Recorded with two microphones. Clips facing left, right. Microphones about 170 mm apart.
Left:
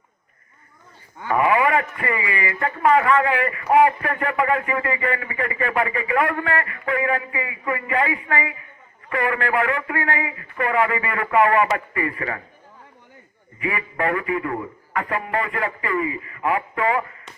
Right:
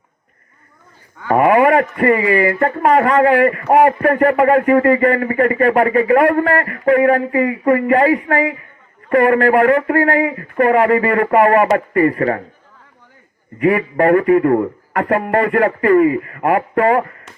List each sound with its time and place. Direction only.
1.3 s speech: 50° right (ahead or behind)
13.6 s speech: 50° right (ahead or behind)